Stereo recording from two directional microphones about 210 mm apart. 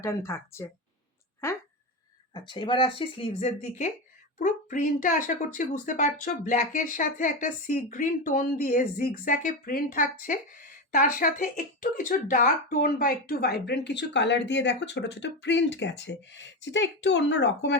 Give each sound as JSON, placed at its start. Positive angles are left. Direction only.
{"t": 0.0, "sound": "speech", "side_deg": 10}